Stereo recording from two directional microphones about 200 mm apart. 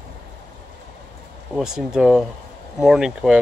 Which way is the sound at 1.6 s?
5° right (ahead or behind).